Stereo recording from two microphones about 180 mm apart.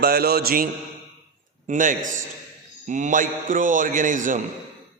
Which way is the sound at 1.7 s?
45° right (ahead or behind).